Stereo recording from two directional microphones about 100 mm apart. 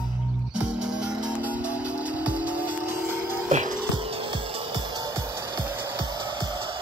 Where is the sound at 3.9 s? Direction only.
65° right (ahead or behind).